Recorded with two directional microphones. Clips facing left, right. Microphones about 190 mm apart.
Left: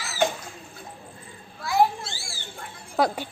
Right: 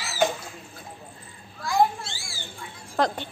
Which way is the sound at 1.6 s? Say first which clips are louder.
Left 1 dB; 5° left (ahead or behind).